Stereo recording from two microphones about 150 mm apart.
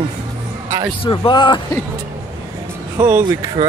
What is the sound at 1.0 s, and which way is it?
Speech, 35° left (ahead or behind).